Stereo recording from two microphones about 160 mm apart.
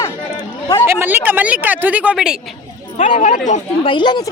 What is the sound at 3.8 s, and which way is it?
Speech, 30° left (ahead or behind).